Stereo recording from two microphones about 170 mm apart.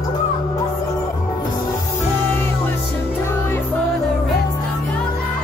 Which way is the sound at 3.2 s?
15° left (ahead or behind).